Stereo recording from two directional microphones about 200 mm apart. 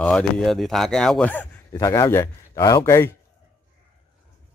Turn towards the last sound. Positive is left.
turn(degrees=15)  # may be behind; listen again after turning